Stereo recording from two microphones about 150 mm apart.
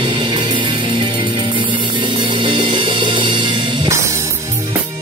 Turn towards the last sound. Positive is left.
turn(degrees=-20)  # may be behind; listen again after turning